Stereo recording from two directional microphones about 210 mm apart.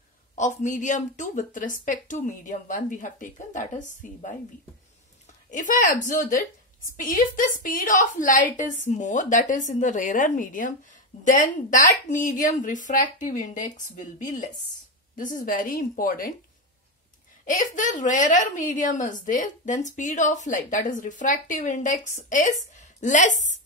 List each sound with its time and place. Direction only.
0.4 s a woman's voice: 35° left (ahead or behind)
5.5 s a woman's voice: 35° left (ahead or behind)
17.5 s a woman's voice: 35° left (ahead or behind)